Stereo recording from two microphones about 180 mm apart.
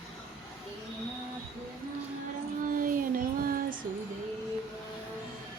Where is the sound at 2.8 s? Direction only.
50° right (ahead or behind).